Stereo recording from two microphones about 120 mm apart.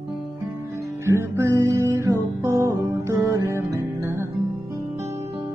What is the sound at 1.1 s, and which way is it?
Music, 20° right (ahead or behind).